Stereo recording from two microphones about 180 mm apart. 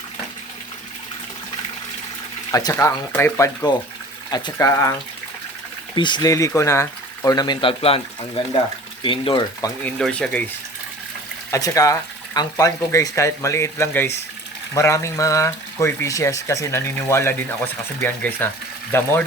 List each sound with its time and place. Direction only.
2.5 s speech: 20° left (ahead or behind)
9.8 s speech: 5° left (ahead or behind)
11.5 s speech: 20° left (ahead or behind)